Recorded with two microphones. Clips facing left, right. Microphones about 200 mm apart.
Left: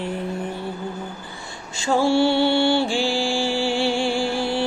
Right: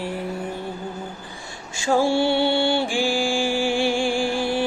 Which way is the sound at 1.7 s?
15° right (ahead or behind).